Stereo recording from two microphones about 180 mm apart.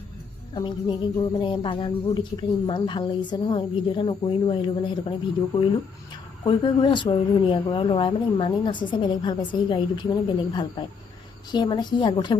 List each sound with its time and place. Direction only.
0.5 s speech: 25° left (ahead or behind)
6.4 s speech: 25° left (ahead or behind)